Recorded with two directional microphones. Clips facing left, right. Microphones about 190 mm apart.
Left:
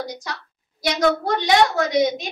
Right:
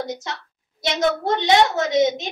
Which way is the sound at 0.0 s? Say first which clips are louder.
Right 2 dB; 25° right (ahead or behind).